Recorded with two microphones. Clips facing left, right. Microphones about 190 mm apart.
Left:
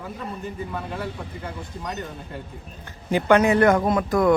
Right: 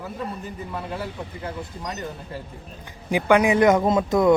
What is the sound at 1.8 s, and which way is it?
A man's voice, 5° right (ahead or behind).